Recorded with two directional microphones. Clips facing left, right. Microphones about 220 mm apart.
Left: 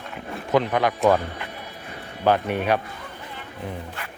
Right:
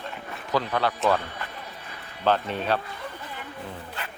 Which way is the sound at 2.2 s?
15° left (ahead or behind).